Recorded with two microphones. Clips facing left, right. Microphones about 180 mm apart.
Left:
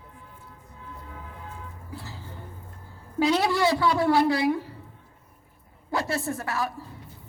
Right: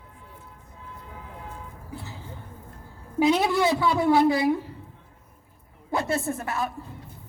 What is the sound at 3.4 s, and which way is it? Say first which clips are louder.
Speech: even; 20° right (ahead or behind).